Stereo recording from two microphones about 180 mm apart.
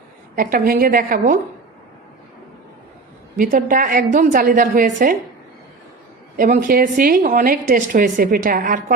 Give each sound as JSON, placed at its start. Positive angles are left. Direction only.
{"t": 0.3, "sound": "a woman's voice", "side_deg": -50}
{"t": 3.3, "sound": "a woman's voice", "side_deg": -50}
{"t": 6.3, "sound": "a woman's voice", "side_deg": -50}